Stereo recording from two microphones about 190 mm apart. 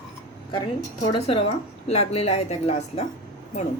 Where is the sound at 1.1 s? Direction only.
30° left (ahead or behind).